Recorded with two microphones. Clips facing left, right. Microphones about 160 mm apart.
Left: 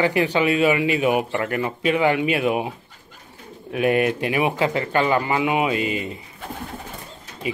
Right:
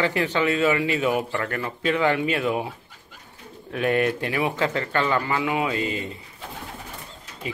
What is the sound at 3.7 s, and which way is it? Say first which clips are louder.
Speech: left 3 dB; 15° left (ahead or behind).